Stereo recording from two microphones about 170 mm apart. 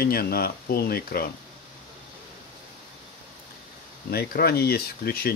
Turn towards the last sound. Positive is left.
turn(degrees=65)  # may be behind; listen again after turning